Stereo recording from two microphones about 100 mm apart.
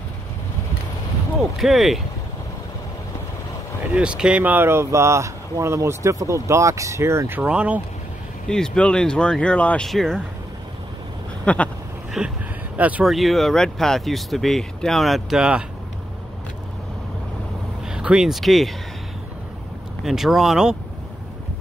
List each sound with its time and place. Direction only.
1.6 s speech: centre (ahead or behind)
3.9 s speech: 10° right (ahead or behind)
8.5 s speech: 10° left (ahead or behind)
11.4 s speech: 15° left (ahead or behind)
12.2 s speech: 5° right (ahead or behind)
13.0 s speech: centre (ahead or behind)
17.8 s speech: 5° right (ahead or behind)
20.1 s speech: 5° right (ahead or behind)